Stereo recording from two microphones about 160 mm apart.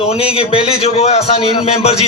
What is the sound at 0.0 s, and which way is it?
A man's voice, 40° left (ahead or behind).